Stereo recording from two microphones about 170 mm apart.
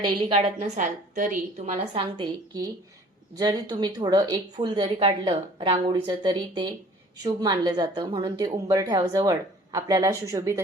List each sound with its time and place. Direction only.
0.0 s a woman's voice: 30° right (ahead or behind)
0.8 s a woman's voice: 50° right (ahead or behind)
1.9 s speech: 25° right (ahead or behind)